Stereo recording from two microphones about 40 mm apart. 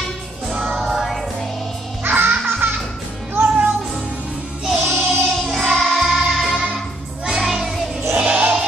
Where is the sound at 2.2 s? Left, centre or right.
Right.